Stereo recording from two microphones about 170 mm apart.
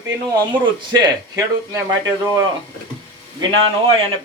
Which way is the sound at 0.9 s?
15° right (ahead or behind).